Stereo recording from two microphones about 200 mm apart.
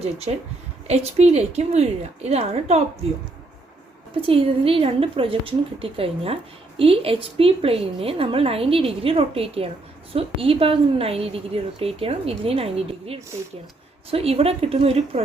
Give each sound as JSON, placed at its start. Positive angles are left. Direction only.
{"t": 0.0, "sound": "a woman's voice", "side_deg": -30}
{"t": 4.1, "sound": "a woman's voice", "side_deg": -25}